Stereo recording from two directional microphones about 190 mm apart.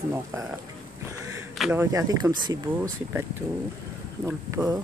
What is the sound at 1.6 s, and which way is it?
Speech, 10° right (ahead or behind).